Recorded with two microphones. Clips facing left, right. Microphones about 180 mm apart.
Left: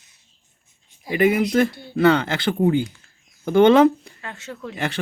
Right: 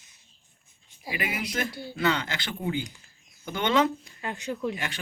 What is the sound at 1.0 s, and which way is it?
Speech, 50° left (ahead or behind).